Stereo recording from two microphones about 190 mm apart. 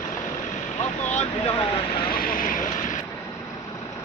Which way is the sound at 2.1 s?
50° left (ahead or behind).